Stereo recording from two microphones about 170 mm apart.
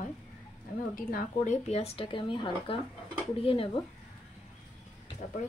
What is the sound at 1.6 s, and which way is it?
Speech, 35° left (ahead or behind).